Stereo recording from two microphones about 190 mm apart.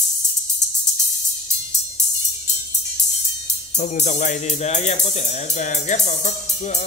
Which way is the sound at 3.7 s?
40° left (ahead or behind).